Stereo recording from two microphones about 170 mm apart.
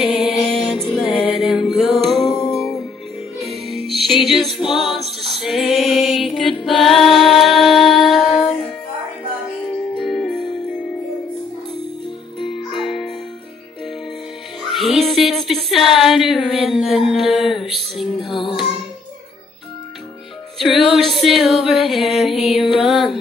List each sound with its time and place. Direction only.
0.0 s music: 5° right (ahead or behind)
9.9 s music: centre (ahead or behind)
12.7 s music: centre (ahead or behind)
14.6 s music: centre (ahead or behind)
18.3 s music: 30° left (ahead or behind)
20.5 s female singing: centre (ahead or behind)
22.6 s music: centre (ahead or behind)